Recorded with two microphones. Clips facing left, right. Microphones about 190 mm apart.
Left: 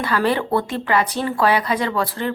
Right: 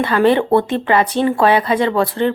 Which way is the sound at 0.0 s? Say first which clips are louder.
Right 6 dB; 25° right (ahead or behind).